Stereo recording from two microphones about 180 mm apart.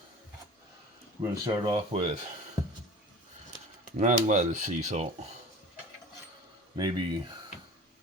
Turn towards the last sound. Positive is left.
turn(degrees=-25)  # may be behind; listen again after turning